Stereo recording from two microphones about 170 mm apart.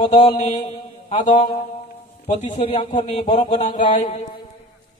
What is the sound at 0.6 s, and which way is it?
Mantra, 40° left (ahead or behind).